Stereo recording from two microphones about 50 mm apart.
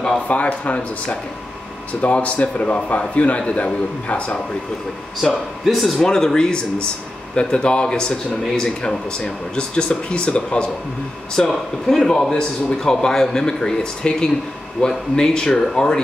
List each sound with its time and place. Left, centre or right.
0.3 s a man's voice: left
5.2 s a man's voice: centre; by 10.7 s left
11.3 s speech: centre